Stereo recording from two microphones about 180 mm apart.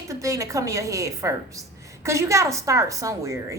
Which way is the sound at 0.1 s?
15° right (ahead or behind).